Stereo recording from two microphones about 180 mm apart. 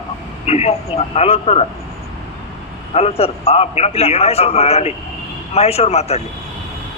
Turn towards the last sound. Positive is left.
turn(degrees=35)  # may be behind; listen again after turning